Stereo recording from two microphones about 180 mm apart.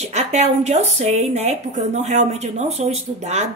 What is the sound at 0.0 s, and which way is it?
Speech, 40° right (ahead or behind).